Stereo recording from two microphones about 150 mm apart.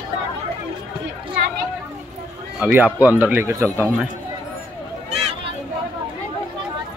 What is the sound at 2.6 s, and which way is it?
Speech, 10° right (ahead or behind).